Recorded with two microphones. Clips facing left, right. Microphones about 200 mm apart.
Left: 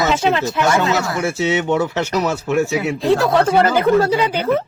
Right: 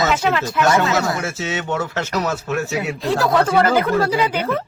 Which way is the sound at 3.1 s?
25° left (ahead or behind).